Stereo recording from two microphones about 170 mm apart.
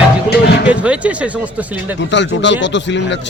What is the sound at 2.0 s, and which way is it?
Speech, 90° left.